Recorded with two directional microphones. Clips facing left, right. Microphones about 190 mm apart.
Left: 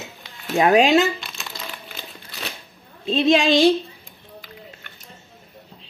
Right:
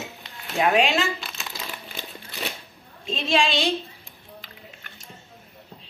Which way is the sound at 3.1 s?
35° left (ahead or behind).